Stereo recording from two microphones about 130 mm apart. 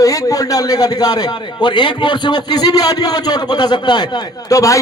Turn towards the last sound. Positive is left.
turn(degrees=25)  # may be behind; listen again after turning